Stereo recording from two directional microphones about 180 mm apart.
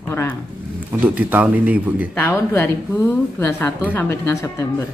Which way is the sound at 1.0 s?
10° right (ahead or behind).